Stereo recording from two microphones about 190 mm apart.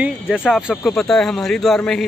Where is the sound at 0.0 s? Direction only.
5° right (ahead or behind).